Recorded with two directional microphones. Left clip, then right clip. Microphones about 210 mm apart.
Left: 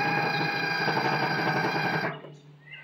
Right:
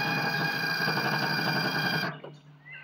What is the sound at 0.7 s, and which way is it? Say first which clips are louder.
Vehicle: left 2 dB; 20° left (ahead or behind).